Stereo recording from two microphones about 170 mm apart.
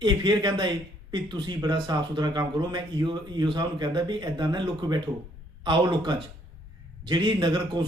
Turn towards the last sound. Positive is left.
turn(degrees=-25)  # may be behind; listen again after turning